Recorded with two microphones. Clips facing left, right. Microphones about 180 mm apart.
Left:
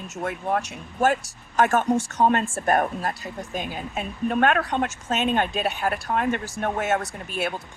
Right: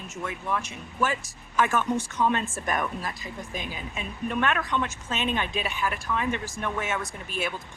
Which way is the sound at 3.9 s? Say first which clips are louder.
Left 5 dB; 50° left (ahead or behind).